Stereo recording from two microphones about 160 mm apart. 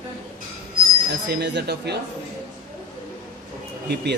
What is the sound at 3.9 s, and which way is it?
Speech, 90° right.